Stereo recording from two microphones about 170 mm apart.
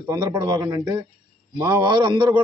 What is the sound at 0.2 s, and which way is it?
A man's voice, 25° right (ahead or behind).